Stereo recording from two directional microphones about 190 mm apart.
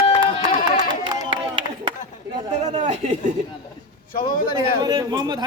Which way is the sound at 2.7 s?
35° right (ahead or behind).